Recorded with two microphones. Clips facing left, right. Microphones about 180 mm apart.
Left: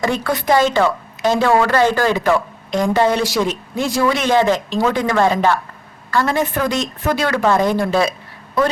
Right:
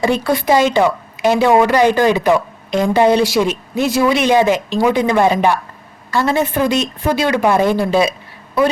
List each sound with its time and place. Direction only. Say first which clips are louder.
0.0 s a woman's voice: right 4 dB; 15° right (ahead or behind)